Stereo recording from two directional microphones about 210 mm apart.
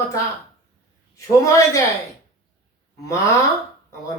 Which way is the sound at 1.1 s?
15° left (ahead or behind).